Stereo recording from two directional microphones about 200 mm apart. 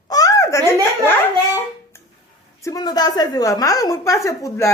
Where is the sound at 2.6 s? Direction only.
15° left (ahead or behind).